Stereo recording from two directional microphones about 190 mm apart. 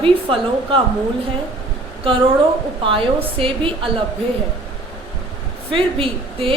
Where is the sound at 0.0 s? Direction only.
30° right (ahead or behind).